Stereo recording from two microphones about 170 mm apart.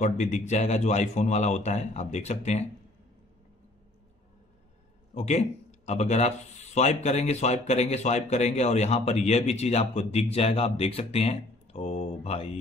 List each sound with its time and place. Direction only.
0.0 s a man's voice: 45° left (ahead or behind)
5.1 s a man's voice: 40° left (ahead or behind)